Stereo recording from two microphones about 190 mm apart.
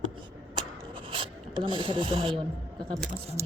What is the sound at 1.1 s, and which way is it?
Filing, 30° right (ahead or behind).